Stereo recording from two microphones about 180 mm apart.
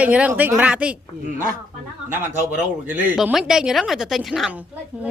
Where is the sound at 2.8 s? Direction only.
10° right (ahead or behind).